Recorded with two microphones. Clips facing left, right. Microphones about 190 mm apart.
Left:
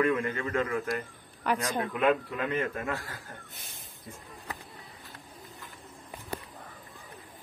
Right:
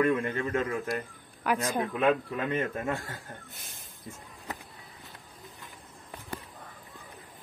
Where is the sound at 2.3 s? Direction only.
25° right (ahead or behind).